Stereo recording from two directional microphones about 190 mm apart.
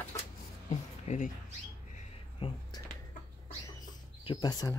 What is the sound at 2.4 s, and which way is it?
Speech, 25° left (ahead or behind).